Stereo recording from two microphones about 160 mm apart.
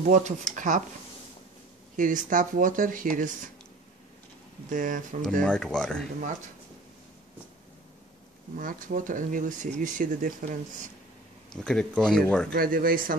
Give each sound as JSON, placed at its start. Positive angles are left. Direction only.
{"t": 0.0, "sound": "speech", "side_deg": -50}
{"t": 2.0, "sound": "speech", "side_deg": -55}
{"t": 4.6, "sound": "speech", "side_deg": -55}
{"t": 5.4, "sound": "speech", "side_deg": 5}
{"t": 8.5, "sound": "speech", "side_deg": -60}
{"t": 11.5, "sound": "speech", "side_deg": 5}
{"t": 12.5, "sound": "speech", "side_deg": -65}